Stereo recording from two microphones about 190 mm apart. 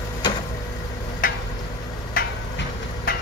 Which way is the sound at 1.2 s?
45° left (ahead or behind).